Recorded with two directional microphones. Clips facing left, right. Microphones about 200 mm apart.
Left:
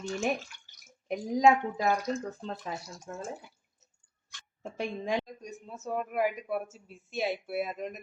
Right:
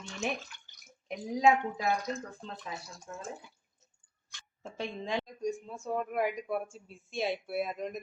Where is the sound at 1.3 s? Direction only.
40° left (ahead or behind).